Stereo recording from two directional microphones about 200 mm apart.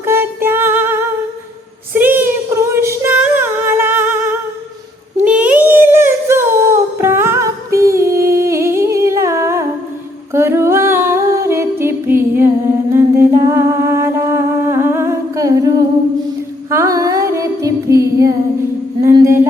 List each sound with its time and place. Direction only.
0.0 s music: 10° right (ahead or behind)
1.9 s female singing: 10° right (ahead or behind)
5.2 s a sound: 5° right (ahead or behind)
7.0 s humming: 10° right (ahead or behind)
16.6 s female singing: 15° right (ahead or behind)
19.0 s a sound: 15° right (ahead or behind)